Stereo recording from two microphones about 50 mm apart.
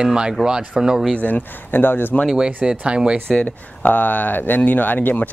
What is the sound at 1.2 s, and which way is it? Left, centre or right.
Speech, left.